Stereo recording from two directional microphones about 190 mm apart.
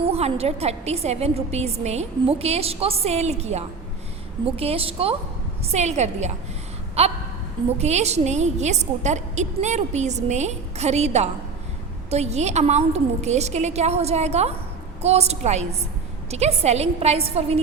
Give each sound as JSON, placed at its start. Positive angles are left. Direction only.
{"t": 0.0, "sound": "a woman's voice", "side_deg": -30}